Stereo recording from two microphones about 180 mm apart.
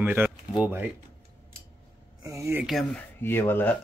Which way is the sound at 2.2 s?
15° right (ahead or behind).